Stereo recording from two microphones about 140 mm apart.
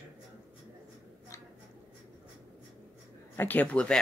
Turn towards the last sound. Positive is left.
turn(degrees=5)  # may be behind; listen again after turning